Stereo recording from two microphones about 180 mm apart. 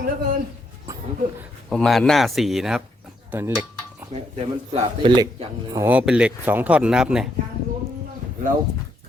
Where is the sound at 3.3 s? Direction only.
15° right (ahead or behind).